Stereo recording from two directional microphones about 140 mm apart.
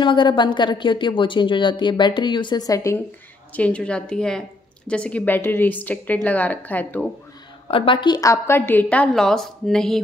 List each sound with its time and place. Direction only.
0.0 s a woman's voice: 35° left (ahead or behind)
3.5 s speech: 10° left (ahead or behind)
7.6 s speech: 40° left (ahead or behind); by 9.9 s 5° left (ahead or behind)